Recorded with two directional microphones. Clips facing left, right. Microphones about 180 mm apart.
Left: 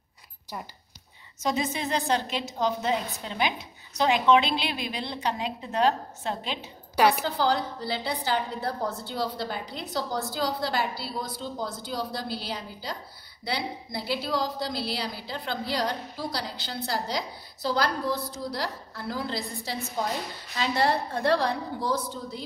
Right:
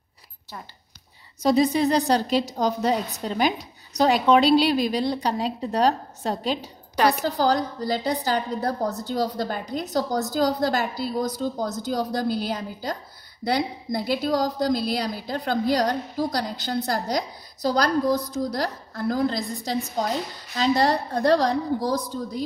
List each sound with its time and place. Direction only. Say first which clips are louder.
1.4 s a woman's voice: right 9 dB; 35° right (ahead or behind)